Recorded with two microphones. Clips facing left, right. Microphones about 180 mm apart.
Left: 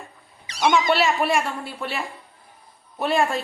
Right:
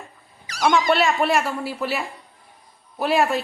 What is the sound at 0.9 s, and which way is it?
A woman's voice, centre (ahead or behind).